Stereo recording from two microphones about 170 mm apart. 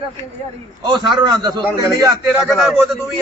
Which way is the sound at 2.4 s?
Centre (ahead or behind).